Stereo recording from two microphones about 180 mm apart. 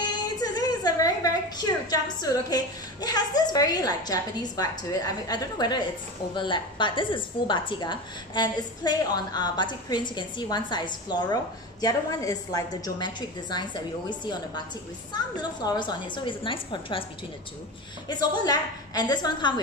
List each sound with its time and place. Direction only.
0.0 s a woman's voice: 20° left (ahead or behind)
18.0 s a woman's voice: 20° left (ahead or behind)